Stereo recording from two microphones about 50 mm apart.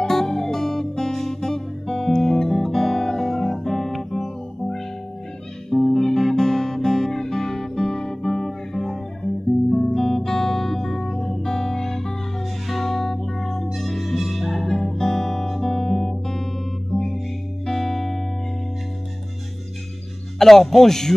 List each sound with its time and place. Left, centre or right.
0.0 s music: centre
2.0 s guitar: centre
9.9 s music: centre
20.3 s speech: centre